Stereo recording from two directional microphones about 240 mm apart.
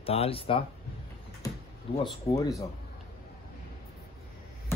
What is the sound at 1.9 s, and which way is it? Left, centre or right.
Speech, centre.